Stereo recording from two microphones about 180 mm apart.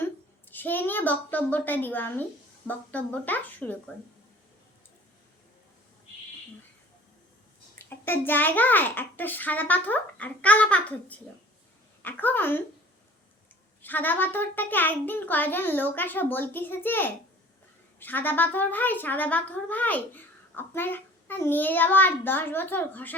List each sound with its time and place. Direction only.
0.0 s a sound: 10° left (ahead or behind)
2.6 s a child's voice: 10° left (ahead or behind)
7.9 s a child's voice: 10° left (ahead or behind)
13.8 s a child's voice: 10° left (ahead or behind)